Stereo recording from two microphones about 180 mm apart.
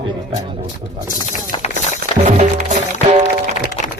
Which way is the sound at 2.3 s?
45° right (ahead or behind).